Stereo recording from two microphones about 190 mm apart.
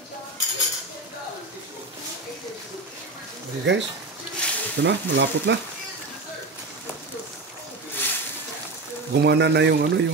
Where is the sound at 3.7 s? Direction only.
70° right (ahead or behind).